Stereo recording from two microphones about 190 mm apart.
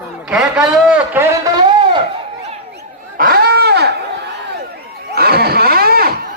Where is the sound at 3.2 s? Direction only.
50° right (ahead or behind).